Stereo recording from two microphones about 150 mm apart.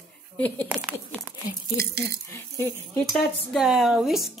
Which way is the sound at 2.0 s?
20° left (ahead or behind).